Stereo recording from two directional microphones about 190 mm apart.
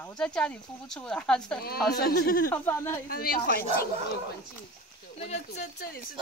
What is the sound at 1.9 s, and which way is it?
Speech, 55° left (ahead or behind).